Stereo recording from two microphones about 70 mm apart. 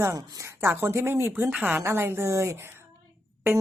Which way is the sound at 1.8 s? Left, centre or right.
Right.